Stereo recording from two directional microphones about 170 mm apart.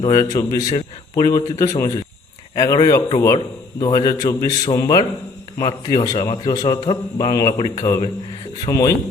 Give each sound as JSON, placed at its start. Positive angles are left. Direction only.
{"t": 0.0, "sound": "a man's voice", "side_deg": 20}